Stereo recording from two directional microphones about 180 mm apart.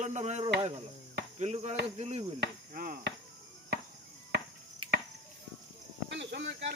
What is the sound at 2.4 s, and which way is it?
Chop, 55° right (ahead or behind).